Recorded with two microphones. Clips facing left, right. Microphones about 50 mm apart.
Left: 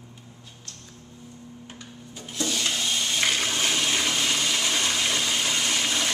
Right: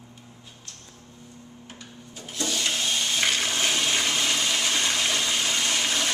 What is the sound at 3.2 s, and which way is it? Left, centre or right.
Toilet flush, centre.